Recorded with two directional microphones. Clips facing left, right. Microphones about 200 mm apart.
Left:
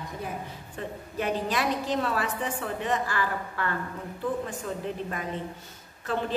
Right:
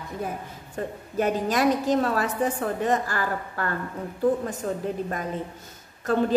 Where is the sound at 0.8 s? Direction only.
45° right (ahead or behind).